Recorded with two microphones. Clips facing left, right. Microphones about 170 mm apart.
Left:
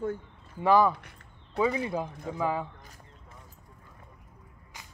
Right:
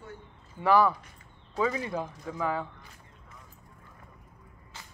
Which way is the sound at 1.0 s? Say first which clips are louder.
Left 1 dB; 65° left (ahead or behind).